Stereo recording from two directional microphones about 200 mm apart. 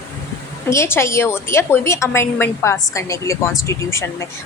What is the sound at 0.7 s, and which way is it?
A woman's voice, 15° left (ahead or behind).